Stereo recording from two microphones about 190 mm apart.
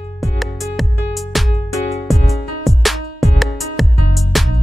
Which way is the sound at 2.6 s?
Centre (ahead or behind).